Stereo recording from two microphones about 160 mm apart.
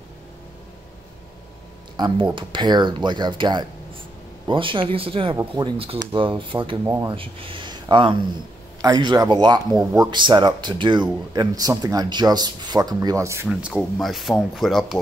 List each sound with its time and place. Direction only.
2.0 s speech: 25° right (ahead or behind)
6.8 s speech: 20° right (ahead or behind)
7.1 s speech: 35° right (ahead or behind); by 13.5 s 20° right (ahead or behind)
13.5 s speech: 5° right (ahead or behind)